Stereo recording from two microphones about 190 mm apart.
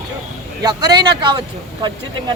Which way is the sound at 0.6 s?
20° right (ahead or behind).